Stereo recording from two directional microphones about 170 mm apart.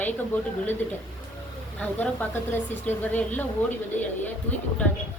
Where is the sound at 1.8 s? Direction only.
10° left (ahead or behind).